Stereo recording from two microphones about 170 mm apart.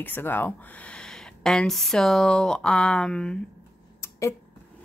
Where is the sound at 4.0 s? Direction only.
15° left (ahead or behind).